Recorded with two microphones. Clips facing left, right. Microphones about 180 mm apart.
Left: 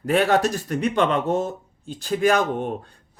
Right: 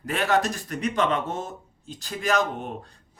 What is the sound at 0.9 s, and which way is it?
Speech, 30° left (ahead or behind).